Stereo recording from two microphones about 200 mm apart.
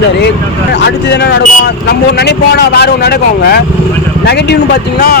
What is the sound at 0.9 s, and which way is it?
Speech, 55° left (ahead or behind).